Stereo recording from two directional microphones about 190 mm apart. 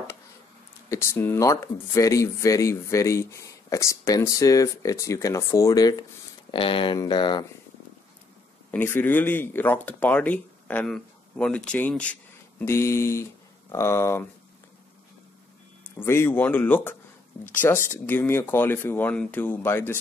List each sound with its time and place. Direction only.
0.8 s speech: 15° left (ahead or behind)
8.7 s speech: 10° left (ahead or behind)
16.0 s speech: 10° left (ahead or behind)